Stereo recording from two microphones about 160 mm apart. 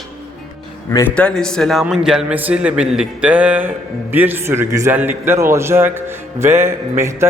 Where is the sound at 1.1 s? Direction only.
5° left (ahead or behind).